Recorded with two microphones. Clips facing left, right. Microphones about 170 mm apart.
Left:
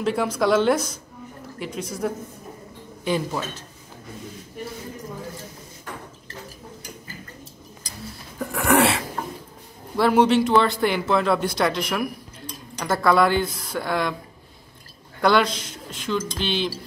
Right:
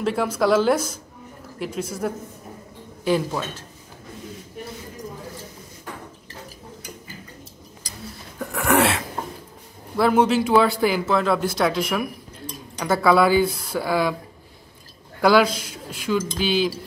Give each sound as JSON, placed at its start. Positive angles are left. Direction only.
{"t": 0.0, "sound": "a man's voice", "side_deg": 0}
{"t": 8.1, "sound": "a sound", "side_deg": 0}
{"t": 9.9, "sound": "a man's voice", "side_deg": 0}
{"t": 15.2, "sound": "speech", "side_deg": -5}